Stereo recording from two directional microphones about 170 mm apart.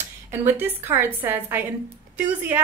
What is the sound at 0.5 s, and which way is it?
A woman's voice, 10° right (ahead or behind).